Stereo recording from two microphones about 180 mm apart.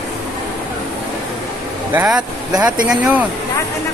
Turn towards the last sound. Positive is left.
turn(degrees=-5)  # may be behind; listen again after turning